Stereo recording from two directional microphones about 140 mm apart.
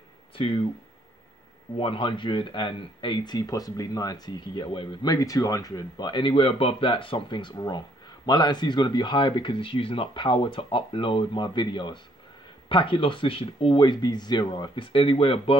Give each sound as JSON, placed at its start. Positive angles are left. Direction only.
{"t": 0.4, "sound": "speech", "side_deg": 40}
{"t": 1.8, "sound": "speech", "side_deg": 35}